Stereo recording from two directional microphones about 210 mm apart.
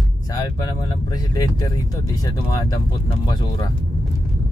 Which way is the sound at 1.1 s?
20° left (ahead or behind).